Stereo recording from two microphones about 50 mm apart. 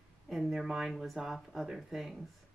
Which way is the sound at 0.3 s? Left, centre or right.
Centre.